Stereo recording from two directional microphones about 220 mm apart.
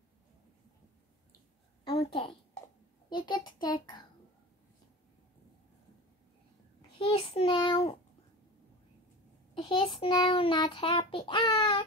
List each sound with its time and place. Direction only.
1.9 s a sound: 25° left (ahead or behind)
3.1 s a child's voice: 20° left (ahead or behind)
7.0 s a child's voice: 25° left (ahead or behind)
9.6 s a child's voice: 20° left (ahead or behind)